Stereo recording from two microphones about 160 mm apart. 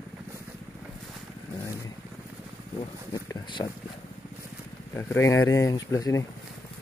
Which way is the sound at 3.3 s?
30° left (ahead or behind).